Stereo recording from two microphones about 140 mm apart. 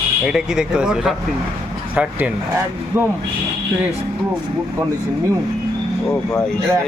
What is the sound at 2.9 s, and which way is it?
Speech, 20° right (ahead or behind).